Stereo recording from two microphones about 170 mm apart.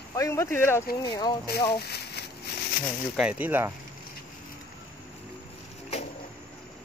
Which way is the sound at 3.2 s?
10° right (ahead or behind).